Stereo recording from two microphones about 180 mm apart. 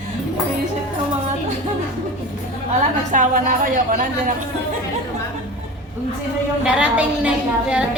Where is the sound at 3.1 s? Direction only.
45° right (ahead or behind).